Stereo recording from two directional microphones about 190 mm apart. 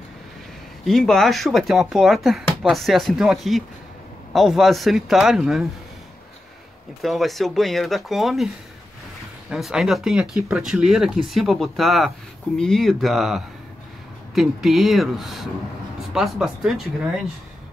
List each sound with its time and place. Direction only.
0.8 s speech: centre (ahead or behind)
7.0 s speech: centre (ahead or behind)
9.5 s speech: 5° right (ahead or behind)